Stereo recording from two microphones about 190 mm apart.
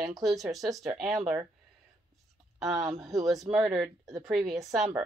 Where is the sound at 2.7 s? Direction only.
20° right (ahead or behind).